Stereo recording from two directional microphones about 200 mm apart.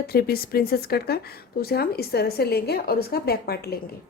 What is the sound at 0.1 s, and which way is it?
A woman's voice, 50° left (ahead or behind).